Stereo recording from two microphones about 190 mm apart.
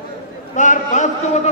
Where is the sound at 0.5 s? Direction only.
40° left (ahead or behind).